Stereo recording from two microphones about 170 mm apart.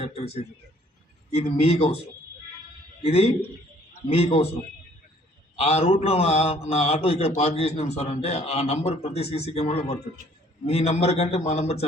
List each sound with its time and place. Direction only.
1.3 s a man's voice: 35° left (ahead or behind)
3.0 s a man's voice: 35° left (ahead or behind)
5.5 s a man's voice: 35° left (ahead or behind)